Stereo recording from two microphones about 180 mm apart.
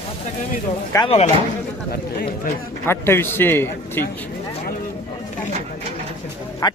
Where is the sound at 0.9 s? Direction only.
15° left (ahead or behind).